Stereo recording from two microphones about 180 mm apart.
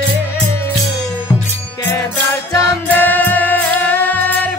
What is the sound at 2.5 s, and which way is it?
Music, 10° left (ahead or behind).